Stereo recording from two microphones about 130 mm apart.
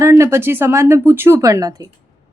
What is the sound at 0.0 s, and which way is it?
A woman's voice, 20° right (ahead or behind).